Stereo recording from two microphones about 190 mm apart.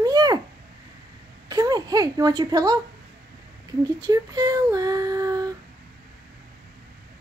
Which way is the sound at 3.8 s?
20° right (ahead or behind).